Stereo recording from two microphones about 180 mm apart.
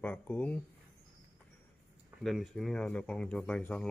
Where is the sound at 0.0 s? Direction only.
10° left (ahead or behind).